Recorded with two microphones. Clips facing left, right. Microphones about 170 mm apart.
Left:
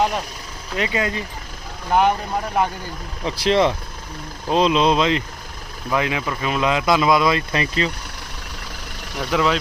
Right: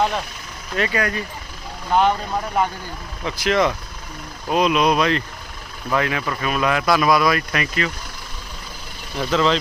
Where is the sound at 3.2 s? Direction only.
30° left (ahead or behind).